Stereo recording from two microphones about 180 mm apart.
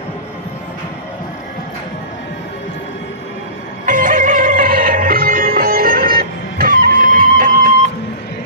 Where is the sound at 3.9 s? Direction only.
45° right (ahead or behind).